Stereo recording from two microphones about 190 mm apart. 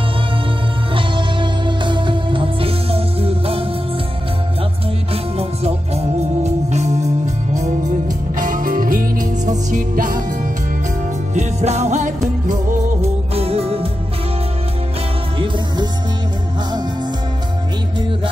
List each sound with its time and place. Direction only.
0.9 s music: 25° right (ahead or behind)
5.1 s music: 30° right (ahead or behind)
8.4 s music: 45° right (ahead or behind); by 13.8 s 30° right (ahead or behind)
15.3 s music: 25° right (ahead or behind)